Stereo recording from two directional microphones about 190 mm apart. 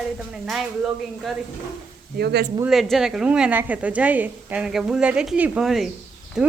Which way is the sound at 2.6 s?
Centre (ahead or behind).